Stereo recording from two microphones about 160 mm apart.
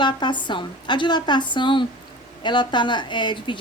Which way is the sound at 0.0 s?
30° left (ahead or behind).